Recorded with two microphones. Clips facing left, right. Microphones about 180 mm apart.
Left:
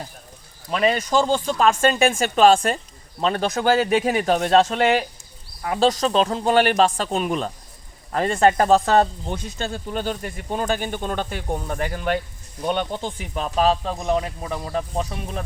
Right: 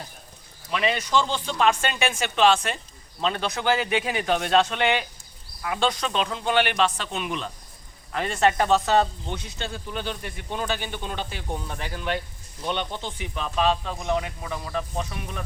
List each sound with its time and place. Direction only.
0.7 s speech: 45° left (ahead or behind)